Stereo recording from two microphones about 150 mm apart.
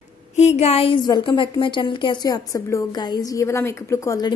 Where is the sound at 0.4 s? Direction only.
45° left (ahead or behind).